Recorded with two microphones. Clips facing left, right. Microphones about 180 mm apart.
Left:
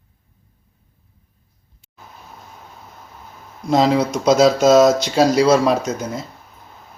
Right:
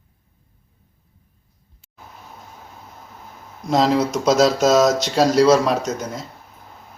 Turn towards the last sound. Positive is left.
turn(degrees=0)  # may be behind; listen again after turning